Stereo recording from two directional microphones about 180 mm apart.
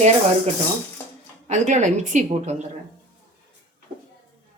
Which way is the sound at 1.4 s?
40° right (ahead or behind).